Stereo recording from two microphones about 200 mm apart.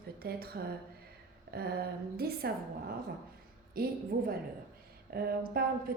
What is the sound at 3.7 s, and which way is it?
A woman's voice, 50° right (ahead or behind).